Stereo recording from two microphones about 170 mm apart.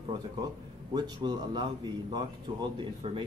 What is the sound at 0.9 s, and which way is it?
Speech, 25° right (ahead or behind).